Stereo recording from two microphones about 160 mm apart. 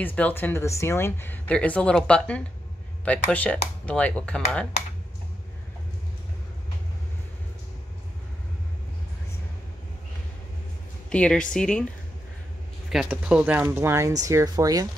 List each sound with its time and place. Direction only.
0.0 s speech: 10° left (ahead or behind)
11.1 s a woman's voice: 5° left (ahead or behind)
12.9 s speech: 5° right (ahead or behind); by 14.9 s 20° right (ahead or behind)